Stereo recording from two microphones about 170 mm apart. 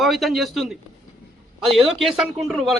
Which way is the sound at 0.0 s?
Centre (ahead or behind).